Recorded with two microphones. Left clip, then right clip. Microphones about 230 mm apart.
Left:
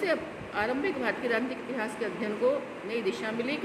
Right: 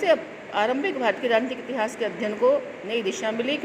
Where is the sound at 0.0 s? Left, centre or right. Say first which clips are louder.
Right 8 dB; right.